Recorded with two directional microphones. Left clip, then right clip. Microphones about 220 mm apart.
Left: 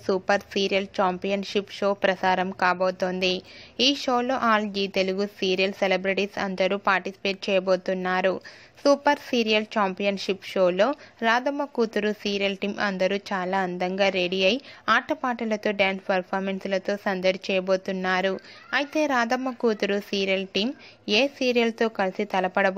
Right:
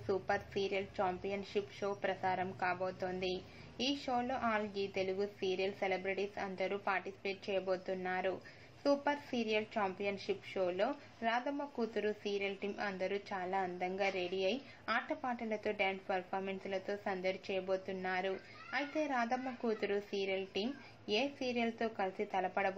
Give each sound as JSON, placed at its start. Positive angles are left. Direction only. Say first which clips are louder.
{"t": 0.0, "sound": "speech", "louder": "left 13 dB", "side_deg": 45}